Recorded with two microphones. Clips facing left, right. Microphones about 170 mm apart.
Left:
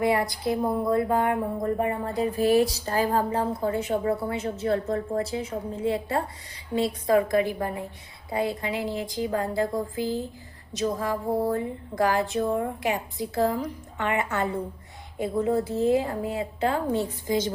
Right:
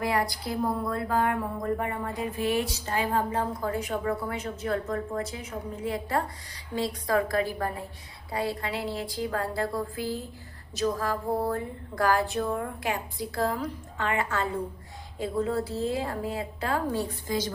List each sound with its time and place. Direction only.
0.0 s speech: 25° left (ahead or behind)